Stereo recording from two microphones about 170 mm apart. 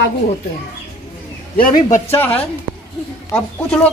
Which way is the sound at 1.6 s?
55° left (ahead or behind).